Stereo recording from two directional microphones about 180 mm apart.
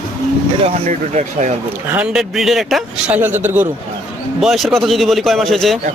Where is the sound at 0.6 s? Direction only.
40° right (ahead or behind).